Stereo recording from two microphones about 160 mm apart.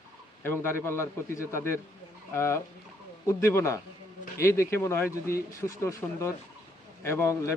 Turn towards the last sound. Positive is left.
turn(degrees=15)  # may be behind; listen again after turning